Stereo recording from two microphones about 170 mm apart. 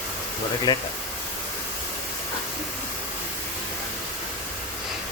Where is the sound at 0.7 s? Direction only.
25° left (ahead or behind).